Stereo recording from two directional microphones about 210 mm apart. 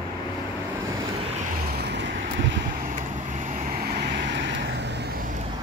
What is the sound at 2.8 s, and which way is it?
Vehicle, 40° right (ahead or behind).